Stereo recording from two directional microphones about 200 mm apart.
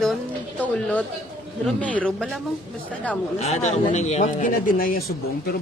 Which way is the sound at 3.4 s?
35° left (ahead or behind).